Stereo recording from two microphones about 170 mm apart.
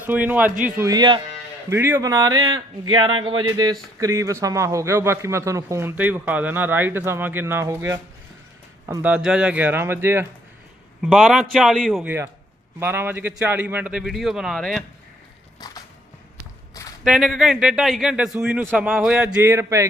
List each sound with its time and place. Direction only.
0.1 s a man's voice: 10° right (ahead or behind)
11.0 s a man's voice: centre (ahead or behind)
12.8 s speech: 15° right (ahead or behind)
15.6 s music: 25° left (ahead or behind)
17.0 s a man's voice: 5° right (ahead or behind)